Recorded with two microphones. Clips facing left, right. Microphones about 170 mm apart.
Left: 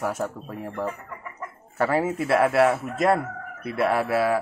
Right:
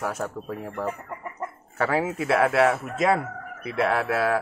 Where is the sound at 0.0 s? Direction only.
Centre (ahead or behind).